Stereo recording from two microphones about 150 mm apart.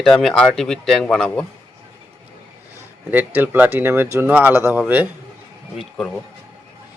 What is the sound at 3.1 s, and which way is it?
Speech, 10° right (ahead or behind).